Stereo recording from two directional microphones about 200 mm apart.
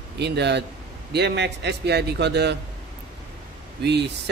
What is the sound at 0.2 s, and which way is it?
A man's voice, 55° right (ahead or behind).